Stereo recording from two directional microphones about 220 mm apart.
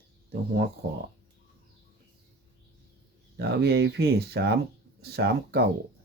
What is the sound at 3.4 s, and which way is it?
Speech, 50° right (ahead or behind).